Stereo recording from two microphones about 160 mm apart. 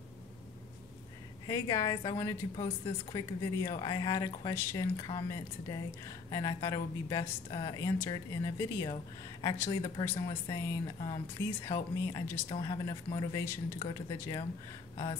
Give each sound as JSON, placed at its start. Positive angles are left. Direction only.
{"t": 1.5, "sound": "a woman's voice", "side_deg": 25}